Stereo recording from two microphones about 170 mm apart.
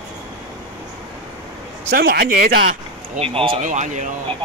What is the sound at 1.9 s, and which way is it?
Speech, 65° right (ahead or behind).